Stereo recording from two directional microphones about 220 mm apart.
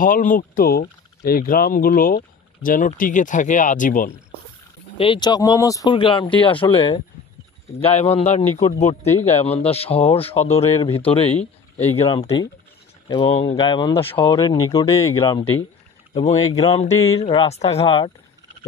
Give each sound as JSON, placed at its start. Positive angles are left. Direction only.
{"t": 0.0, "sound": "speech", "side_deg": 40}
{"t": 4.9, "sound": "speech", "side_deg": 25}
{"t": 16.1, "sound": "speech", "side_deg": 30}